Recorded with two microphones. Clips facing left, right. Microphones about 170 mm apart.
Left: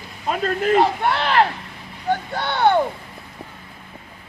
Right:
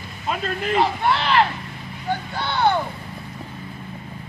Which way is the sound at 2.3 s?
55° left (ahead or behind).